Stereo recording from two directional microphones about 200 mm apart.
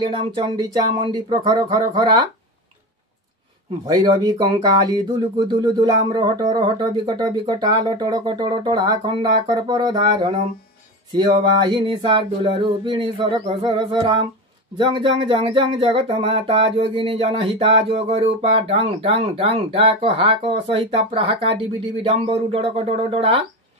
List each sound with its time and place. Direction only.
0.0 s speech: 25° right (ahead or behind)
3.8 s speech: 20° right (ahead or behind)
11.7 s speech: 25° right (ahead or behind)